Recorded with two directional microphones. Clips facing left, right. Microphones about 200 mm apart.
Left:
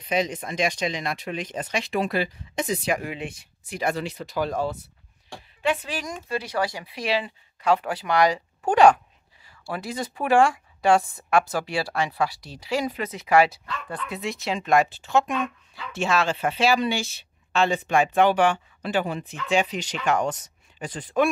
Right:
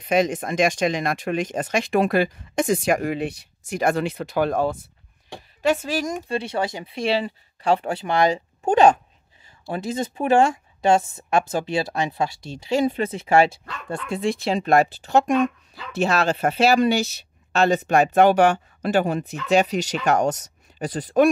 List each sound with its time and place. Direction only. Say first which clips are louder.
0.0 s speech: right 5 dB; 50° right (ahead or behind)
5.6 s a woman's voice: right 5 dB; 40° right (ahead or behind)
6.2 s a woman's voice: right 2 dB; 25° right (ahead or behind)